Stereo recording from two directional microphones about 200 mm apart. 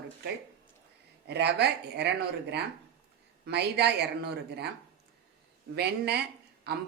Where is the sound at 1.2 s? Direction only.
55° right (ahead or behind).